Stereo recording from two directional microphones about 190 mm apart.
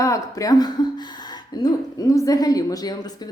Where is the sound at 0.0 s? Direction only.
15° left (ahead or behind).